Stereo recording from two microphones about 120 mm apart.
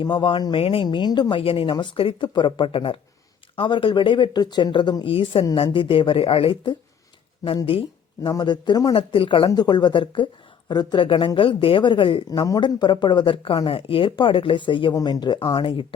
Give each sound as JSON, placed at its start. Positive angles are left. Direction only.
{"t": 0.0, "sound": "speech", "side_deg": 40}
{"t": 1.7, "sound": "speech", "side_deg": 40}
{"t": 5.1, "sound": "speech", "side_deg": 50}
{"t": 8.3, "sound": "speech", "side_deg": 35}
{"t": 9.0, "sound": "speech", "side_deg": 50}